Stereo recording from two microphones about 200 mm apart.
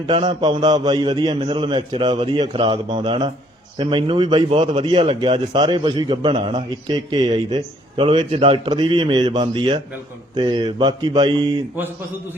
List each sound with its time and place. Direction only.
0.1 s a man's voice: 25° right (ahead or behind)